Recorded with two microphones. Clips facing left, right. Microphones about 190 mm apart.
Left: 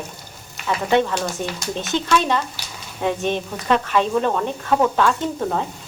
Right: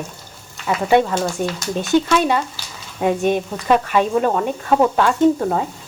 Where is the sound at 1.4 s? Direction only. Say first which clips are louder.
Right 5 dB; 50° right (ahead or behind).